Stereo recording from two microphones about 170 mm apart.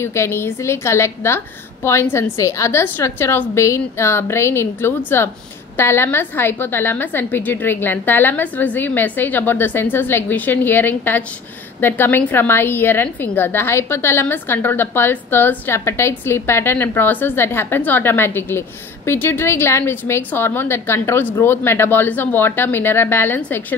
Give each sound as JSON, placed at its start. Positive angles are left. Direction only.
{"t": 0.0, "sound": "a woman's voice", "side_deg": 15}